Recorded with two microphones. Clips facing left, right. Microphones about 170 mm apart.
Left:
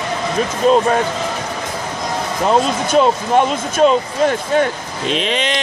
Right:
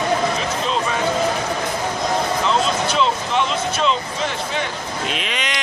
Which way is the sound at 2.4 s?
45° left (ahead or behind).